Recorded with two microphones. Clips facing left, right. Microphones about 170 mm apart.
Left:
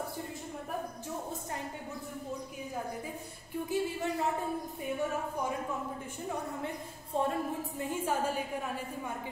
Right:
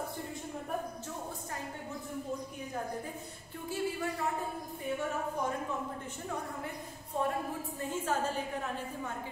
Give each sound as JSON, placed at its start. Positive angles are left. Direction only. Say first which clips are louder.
{"t": 3.6, "sound": "a woman's voice", "louder": "left 1 dB", "side_deg": 20}
{"t": 7.2, "sound": "speech", "louder": "left 2 dB", "side_deg": 25}
{"t": 8.0, "sound": "a woman's voice", "louder": "left 1 dB", "side_deg": 10}